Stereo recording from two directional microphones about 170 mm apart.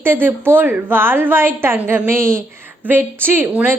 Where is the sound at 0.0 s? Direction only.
10° right (ahead or behind).